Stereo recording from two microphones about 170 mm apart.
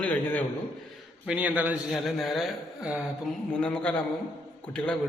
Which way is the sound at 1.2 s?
5° right (ahead or behind).